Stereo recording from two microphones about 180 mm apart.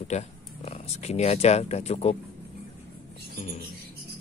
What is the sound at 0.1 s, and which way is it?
Speech, 35° left (ahead or behind).